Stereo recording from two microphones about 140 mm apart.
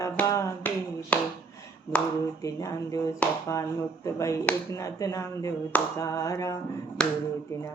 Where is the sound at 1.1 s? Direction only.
10° left (ahead or behind).